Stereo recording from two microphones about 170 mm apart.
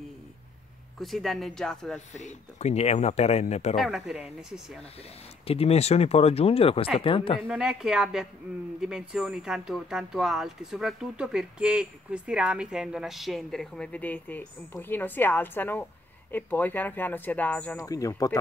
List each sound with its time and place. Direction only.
0.9 s speech: centre (ahead or behind)
2.1 s speech: 40° left (ahead or behind)
3.7 s speech: centre (ahead or behind)
5.5 s speech: 35° left (ahead or behind)
7.4 s speech: 5° right (ahead or behind)
17.8 s speech: 20° left (ahead or behind)